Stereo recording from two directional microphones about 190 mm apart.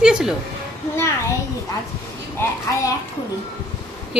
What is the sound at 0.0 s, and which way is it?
Speech, 5° right (ahead or behind).